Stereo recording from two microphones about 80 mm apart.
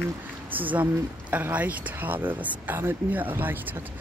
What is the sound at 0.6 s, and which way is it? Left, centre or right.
Speech, right.